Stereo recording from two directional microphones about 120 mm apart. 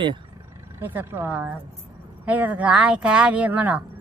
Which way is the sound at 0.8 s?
15° right (ahead or behind).